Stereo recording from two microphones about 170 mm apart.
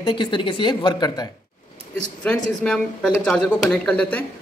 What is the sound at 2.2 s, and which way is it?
Speech, 5° left (ahead or behind).